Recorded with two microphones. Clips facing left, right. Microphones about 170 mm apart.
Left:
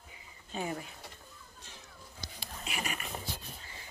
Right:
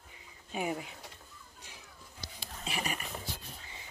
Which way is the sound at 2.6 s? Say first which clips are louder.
Right 2 dB; 30° right (ahead or behind).